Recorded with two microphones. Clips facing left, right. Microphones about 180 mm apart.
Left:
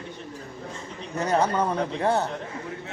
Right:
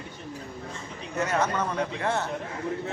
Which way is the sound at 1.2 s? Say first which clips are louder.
Left 3 dB; 35° left (ahead or behind).